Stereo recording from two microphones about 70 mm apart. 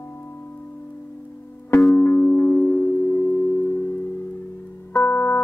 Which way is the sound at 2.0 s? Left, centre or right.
Left.